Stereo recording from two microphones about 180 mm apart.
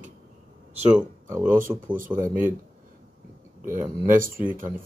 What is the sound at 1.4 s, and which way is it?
Speech, 50° right (ahead or behind).